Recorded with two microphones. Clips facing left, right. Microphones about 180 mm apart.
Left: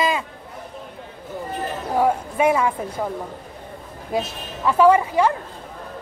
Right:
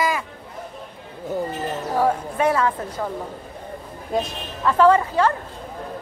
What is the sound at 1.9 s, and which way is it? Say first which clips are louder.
Speech: left 2 dB; 10° left (ahead or behind).